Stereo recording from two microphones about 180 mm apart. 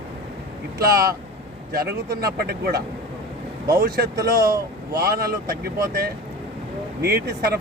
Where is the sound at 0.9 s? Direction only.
55° right (ahead or behind).